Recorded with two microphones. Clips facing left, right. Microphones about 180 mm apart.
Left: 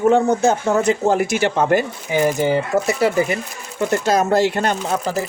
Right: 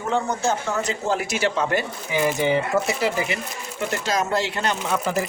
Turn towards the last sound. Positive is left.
turn(degrees=35)  # may be behind; listen again after turning